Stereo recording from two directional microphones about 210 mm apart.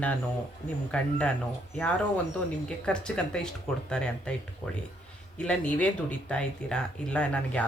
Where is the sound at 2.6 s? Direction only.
5° left (ahead or behind).